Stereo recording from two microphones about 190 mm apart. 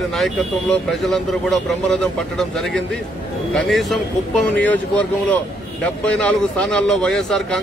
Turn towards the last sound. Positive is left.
turn(degrees=5)  # may be behind; listen again after turning